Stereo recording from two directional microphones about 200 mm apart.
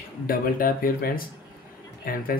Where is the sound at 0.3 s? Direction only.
45° left (ahead or behind).